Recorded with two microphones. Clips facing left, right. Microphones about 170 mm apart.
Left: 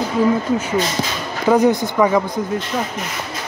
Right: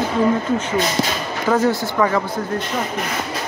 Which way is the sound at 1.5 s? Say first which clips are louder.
Left 4 dB; 20° left (ahead or behind).